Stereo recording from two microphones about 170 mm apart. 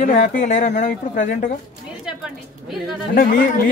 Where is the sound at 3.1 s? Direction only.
55° left (ahead or behind).